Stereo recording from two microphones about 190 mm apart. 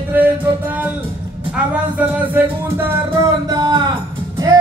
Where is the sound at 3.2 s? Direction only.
20° right (ahead or behind).